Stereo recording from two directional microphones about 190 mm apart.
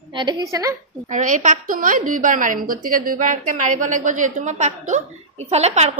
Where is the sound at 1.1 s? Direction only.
40° right (ahead or behind).